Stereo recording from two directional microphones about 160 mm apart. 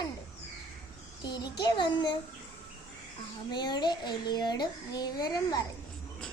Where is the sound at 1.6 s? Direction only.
25° left (ahead or behind).